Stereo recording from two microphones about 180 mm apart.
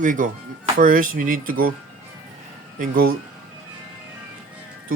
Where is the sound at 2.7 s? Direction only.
50° right (ahead or behind).